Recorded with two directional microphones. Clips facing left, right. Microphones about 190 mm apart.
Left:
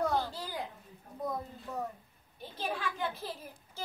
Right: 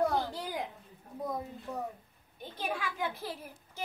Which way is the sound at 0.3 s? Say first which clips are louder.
Right 3 dB; 20° right (ahead or behind).